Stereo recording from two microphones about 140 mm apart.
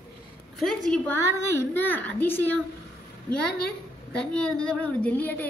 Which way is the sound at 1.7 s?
15° left (ahead or behind).